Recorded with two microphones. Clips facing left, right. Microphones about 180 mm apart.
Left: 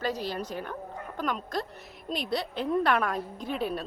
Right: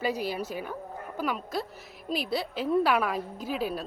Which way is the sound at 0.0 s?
10° right (ahead or behind).